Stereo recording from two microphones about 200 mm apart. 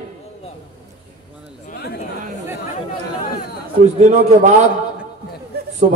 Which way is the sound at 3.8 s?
35° right (ahead or behind).